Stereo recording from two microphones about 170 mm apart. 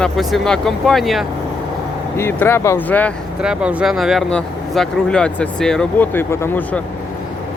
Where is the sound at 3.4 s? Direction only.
5° right (ahead or behind).